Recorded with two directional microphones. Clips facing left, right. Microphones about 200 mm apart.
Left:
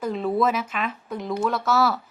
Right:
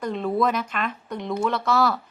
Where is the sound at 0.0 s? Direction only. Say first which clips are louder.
Left 1 dB; 5° left (ahead or behind).